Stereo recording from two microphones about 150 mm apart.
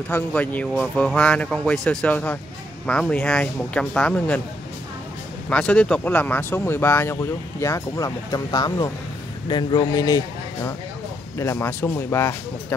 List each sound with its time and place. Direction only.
0.1 s speech: 10° left (ahead or behind)
5.5 s speech: 5° left (ahead or behind)